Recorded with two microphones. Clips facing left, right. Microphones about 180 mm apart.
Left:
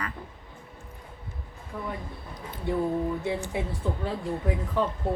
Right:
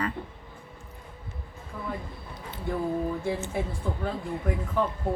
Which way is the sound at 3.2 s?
15° left (ahead or behind).